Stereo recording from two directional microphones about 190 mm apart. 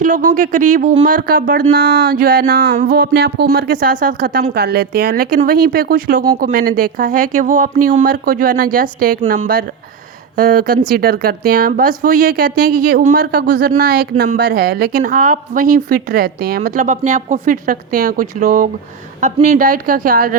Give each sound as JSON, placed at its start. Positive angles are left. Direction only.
{"t": 0.0, "sound": "speech", "side_deg": -45}